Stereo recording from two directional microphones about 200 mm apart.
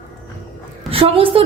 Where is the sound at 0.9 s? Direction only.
30° right (ahead or behind).